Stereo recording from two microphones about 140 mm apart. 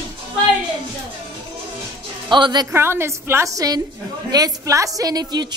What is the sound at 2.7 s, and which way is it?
A woman's voice, 15° right (ahead or behind).